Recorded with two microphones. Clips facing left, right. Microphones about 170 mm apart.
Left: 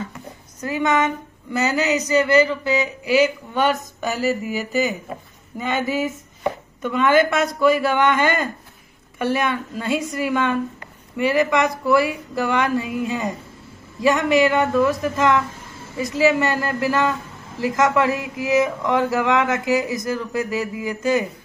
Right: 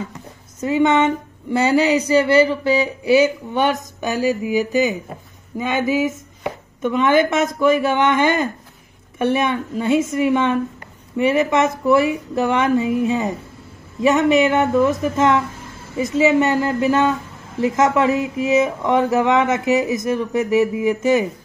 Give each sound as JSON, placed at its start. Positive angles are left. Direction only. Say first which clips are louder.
{"t": 0.6, "sound": "speech", "louder": "right 5 dB", "side_deg": -25}
{"t": 3.5, "sound": "speech", "louder": "right 1 dB", "side_deg": -20}